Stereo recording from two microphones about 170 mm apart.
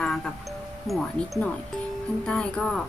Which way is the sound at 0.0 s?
Centre (ahead or behind).